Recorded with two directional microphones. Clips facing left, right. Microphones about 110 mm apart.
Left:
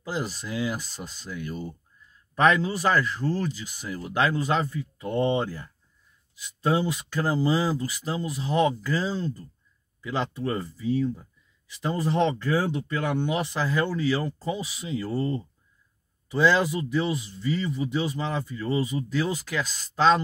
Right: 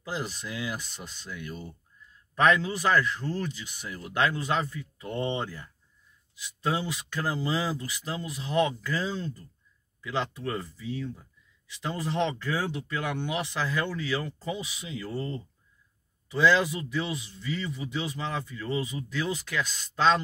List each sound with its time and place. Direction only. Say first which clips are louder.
0.0 s speech: left 3 dB; 35° left (ahead or behind)
4.6 s speech: left 5 dB; 25° left (ahead or behind)
6.7 s speech: left 6 dB; 40° left (ahead or behind)